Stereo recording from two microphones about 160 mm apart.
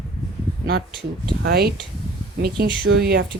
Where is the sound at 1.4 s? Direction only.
80° right.